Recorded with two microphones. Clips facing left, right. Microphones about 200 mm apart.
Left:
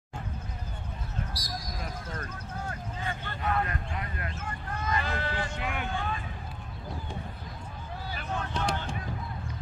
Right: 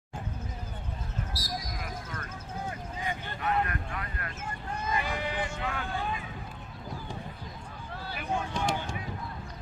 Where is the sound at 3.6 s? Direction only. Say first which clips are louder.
Left 1 dB; 20° left (ahead or behind).